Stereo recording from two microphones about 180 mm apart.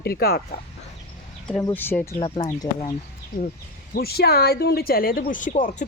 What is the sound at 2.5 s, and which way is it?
Speech, 20° left (ahead or behind).